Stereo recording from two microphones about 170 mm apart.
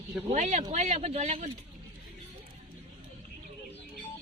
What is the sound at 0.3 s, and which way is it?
Speech, 45° right (ahead or behind).